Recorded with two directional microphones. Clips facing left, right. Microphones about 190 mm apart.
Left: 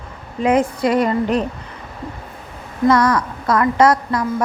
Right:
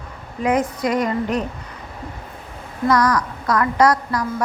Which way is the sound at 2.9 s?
25° left (ahead or behind).